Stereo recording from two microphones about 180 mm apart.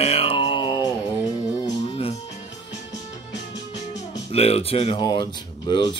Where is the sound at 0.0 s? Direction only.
35° left (ahead or behind).